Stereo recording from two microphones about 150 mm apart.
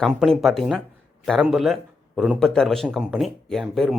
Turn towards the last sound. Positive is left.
turn(degrees=0)  # may be behind; listen again after turning